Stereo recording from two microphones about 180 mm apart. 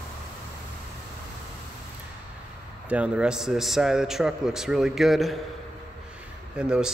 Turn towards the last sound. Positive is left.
turn(degrees=-5)  # may be behind; listen again after turning